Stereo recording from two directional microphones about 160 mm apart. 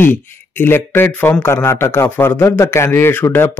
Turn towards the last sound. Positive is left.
turn(degrees=10)  # may be behind; listen again after turning